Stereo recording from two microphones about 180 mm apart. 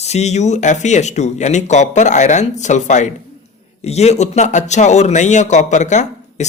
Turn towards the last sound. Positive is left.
turn(degrees=40)  # may be behind; listen again after turning